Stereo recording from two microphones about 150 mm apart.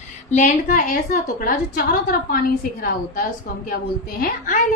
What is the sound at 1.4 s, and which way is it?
A woman's voice, 75° left (ahead or behind).